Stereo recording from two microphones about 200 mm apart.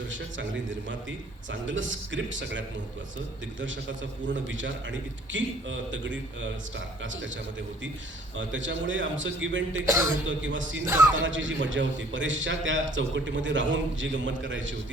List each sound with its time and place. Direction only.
0.1 s a man's voice: 70° right (ahead or behind)
8.4 s a man's voice: 70° right (ahead or behind)
10.8 s music: 15° right (ahead or behind)
11.2 s a man's voice: 70° right (ahead or behind)